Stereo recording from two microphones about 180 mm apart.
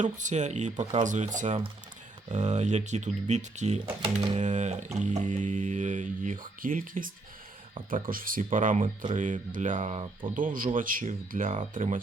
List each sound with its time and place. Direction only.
0.0 s speech: 45° right (ahead or behind)
1.0 s music: 45° right (ahead or behind)
2.3 s speech: 40° right (ahead or behind)
4.4 s music: 40° right (ahead or behind)
10.3 s music: 50° right (ahead or behind)